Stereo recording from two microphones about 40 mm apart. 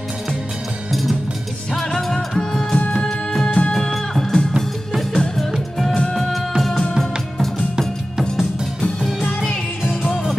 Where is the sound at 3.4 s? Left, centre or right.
Left.